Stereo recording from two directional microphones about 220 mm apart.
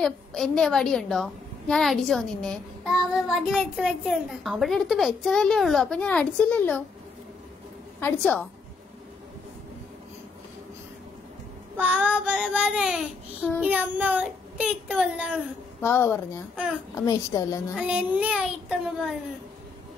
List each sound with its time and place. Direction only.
0.0 s a woman's voice: centre (ahead or behind)
8.0 s a child's voice: 5° left (ahead or behind)
11.7 s a woman's voice: 5° right (ahead or behind)
15.8 s a child's voice: 10° left (ahead or behind)
17.7 s a woman's voice: 5° right (ahead or behind)